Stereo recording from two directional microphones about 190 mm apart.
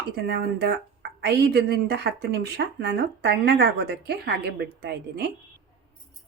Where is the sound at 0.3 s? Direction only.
55° right (ahead or behind).